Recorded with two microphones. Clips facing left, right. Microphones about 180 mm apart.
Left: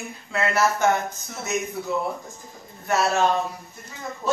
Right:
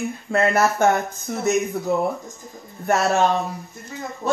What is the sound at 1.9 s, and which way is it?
Speech, 50° right (ahead or behind).